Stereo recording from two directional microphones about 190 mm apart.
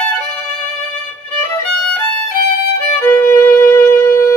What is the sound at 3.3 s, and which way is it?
Shofar, 15° left (ahead or behind).